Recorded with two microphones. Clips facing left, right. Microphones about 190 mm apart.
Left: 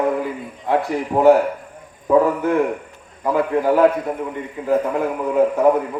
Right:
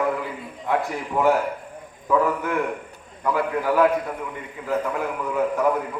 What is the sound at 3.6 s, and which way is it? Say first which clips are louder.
A man's voice: left 4 dB; 30° left (ahead or behind).